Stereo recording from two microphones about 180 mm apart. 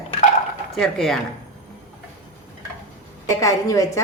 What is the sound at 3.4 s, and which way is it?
Speech, 15° left (ahead or behind).